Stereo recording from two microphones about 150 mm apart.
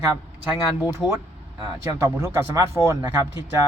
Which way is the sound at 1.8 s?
20° right (ahead or behind).